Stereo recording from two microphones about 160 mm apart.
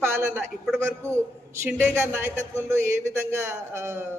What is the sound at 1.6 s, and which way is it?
A man's voice, 10° right (ahead or behind).